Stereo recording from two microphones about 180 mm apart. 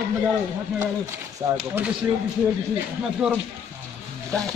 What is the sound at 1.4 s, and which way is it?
Speech, 20° right (ahead or behind).